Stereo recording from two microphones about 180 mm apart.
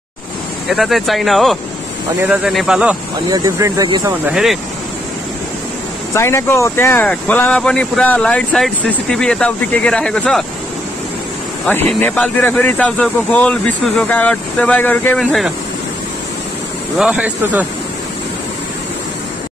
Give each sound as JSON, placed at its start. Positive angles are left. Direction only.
{"t": 0.7, "sound": "speech", "side_deg": 0}
{"t": 3.3, "sound": "speech", "side_deg": -20}
{"t": 4.3, "sound": "speech", "side_deg": -5}
{"t": 6.1, "sound": "speech", "side_deg": 15}
{"t": 11.6, "sound": "speech", "side_deg": 10}
{"t": 17.0, "sound": "speech", "side_deg": -10}